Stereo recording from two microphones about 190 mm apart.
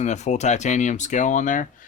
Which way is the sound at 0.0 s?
35° left (ahead or behind).